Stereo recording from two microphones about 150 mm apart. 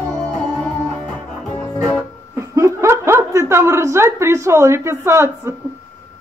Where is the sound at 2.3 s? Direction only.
20° right (ahead or behind).